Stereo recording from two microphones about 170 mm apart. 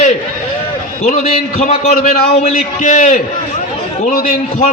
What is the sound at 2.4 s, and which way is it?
Speech, 45° left (ahead or behind).